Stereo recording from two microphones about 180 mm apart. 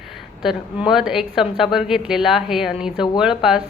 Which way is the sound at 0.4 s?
5° right (ahead or behind).